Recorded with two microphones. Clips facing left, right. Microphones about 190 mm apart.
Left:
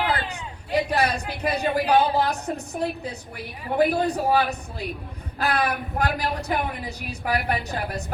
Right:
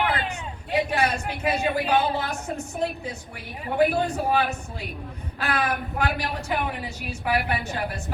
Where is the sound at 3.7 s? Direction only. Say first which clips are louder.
Left 1 dB; 40° left (ahead or behind).